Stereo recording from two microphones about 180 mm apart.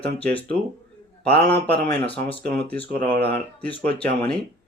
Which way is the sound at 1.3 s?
65° right (ahead or behind).